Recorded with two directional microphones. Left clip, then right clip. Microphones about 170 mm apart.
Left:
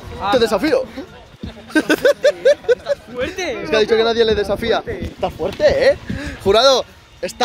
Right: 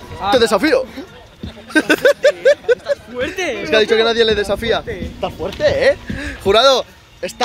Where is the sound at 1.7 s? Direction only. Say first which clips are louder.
Right 2 dB; centre (ahead or behind).